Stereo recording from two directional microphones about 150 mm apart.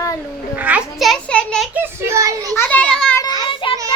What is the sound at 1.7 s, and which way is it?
Speech, 15° right (ahead or behind).